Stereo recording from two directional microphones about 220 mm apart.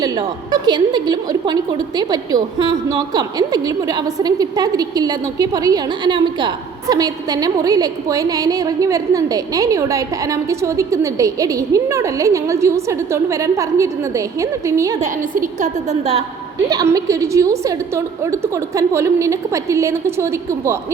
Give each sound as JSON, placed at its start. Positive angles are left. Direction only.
{"t": 0.0, "sound": "a woman's voice", "side_deg": -20}
{"t": 15.0, "sound": "a woman's voice", "side_deg": -35}
{"t": 16.6, "sound": "a woman's voice", "side_deg": -15}